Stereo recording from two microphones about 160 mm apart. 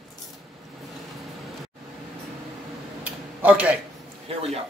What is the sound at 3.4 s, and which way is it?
Speech, 10° right (ahead or behind).